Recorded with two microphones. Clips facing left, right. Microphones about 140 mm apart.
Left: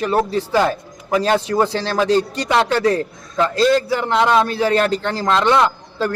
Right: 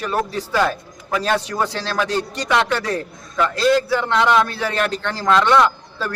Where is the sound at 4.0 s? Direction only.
30° left (ahead or behind).